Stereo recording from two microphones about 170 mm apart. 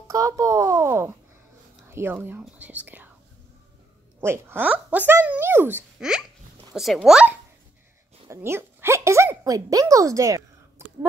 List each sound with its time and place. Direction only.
0.1 s speech: 20° right (ahead or behind)
4.2 s a child's voice: 15° right (ahead or behind)
10.8 s whispering: 15° right (ahead or behind)